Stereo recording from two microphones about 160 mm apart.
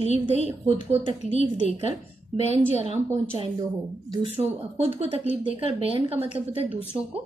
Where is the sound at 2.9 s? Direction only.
40° right (ahead or behind).